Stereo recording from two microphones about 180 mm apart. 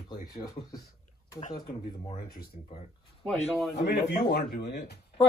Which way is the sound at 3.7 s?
70° left (ahead or behind).